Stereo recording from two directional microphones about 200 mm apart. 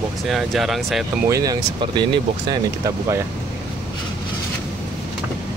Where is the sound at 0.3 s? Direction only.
Centre (ahead or behind).